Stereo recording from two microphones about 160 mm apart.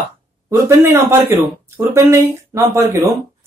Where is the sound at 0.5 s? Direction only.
15° right (ahead or behind).